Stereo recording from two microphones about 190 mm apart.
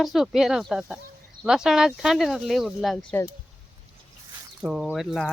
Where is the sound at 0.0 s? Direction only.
Centre (ahead or behind).